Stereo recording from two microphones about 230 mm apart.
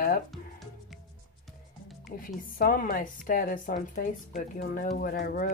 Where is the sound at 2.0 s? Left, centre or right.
Left.